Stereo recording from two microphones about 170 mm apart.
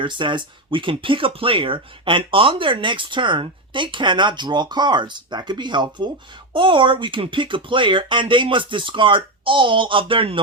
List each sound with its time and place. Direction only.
0.0 s speech: 30° right (ahead or behind)